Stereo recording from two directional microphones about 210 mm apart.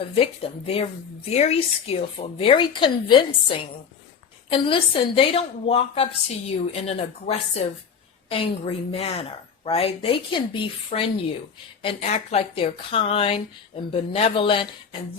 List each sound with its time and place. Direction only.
0.0 s a woman's voice: 25° left (ahead or behind)